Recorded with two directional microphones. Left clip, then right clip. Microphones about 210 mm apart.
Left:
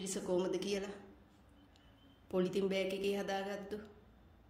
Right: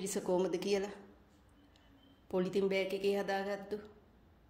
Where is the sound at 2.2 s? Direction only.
20° right (ahead or behind).